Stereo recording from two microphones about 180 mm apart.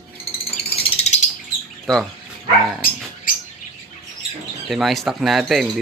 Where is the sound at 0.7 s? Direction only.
35° left (ahead or behind).